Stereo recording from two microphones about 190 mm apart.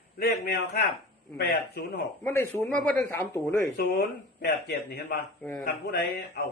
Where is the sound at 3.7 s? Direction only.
60° left (ahead or behind).